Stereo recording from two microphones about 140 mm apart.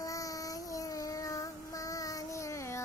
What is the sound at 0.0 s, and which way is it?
Child singing, 25° left (ahead or behind).